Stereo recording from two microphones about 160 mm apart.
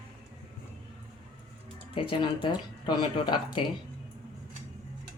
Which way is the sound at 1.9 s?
30° left (ahead or behind).